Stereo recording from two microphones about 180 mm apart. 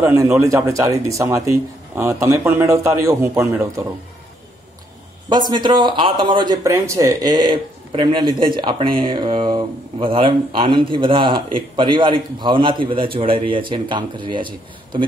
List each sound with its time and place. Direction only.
0.0 s speech: 15° right (ahead or behind)
5.3 s speech: 25° right (ahead or behind)